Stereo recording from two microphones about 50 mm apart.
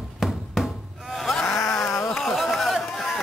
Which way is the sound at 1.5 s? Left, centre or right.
Left.